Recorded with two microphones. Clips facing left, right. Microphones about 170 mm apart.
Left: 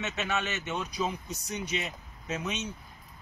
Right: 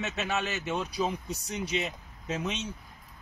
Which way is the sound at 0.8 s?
35° right (ahead or behind).